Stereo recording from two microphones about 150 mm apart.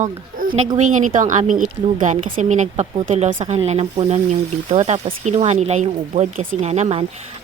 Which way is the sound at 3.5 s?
45° right (ahead or behind).